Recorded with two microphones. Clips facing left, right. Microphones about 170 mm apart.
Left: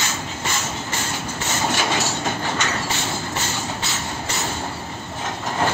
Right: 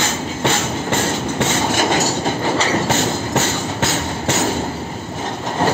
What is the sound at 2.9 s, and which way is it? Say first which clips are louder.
Train: right 8 dB; 70° right (ahead or behind).